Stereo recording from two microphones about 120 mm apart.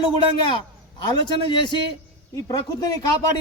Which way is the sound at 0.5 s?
40° left (ahead or behind).